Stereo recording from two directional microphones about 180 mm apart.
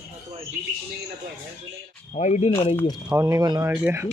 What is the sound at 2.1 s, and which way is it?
Speech, 40° left (ahead or behind).